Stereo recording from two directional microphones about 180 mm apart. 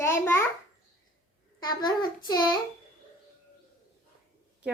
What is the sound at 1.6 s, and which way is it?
Speech, 25° left (ahead or behind).